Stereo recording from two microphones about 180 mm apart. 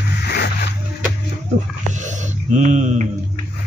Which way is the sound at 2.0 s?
40° right (ahead or behind).